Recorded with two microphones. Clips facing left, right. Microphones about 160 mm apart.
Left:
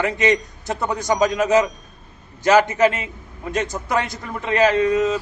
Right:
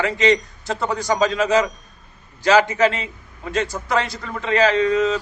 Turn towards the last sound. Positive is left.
turn(degrees=20)  # may be behind; listen again after turning